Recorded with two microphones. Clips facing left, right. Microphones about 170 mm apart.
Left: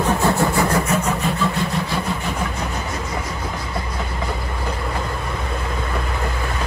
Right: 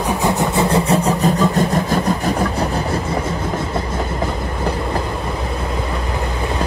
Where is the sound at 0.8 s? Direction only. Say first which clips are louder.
Right 5 dB; 35° right (ahead or behind).